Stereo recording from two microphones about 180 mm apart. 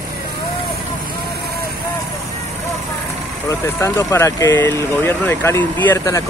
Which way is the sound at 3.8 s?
15° left (ahead or behind).